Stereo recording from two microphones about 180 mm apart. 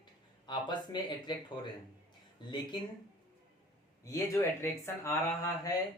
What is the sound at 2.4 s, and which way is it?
Speech, 25° left (ahead or behind).